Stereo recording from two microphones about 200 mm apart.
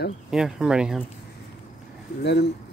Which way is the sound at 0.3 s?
5° right (ahead or behind).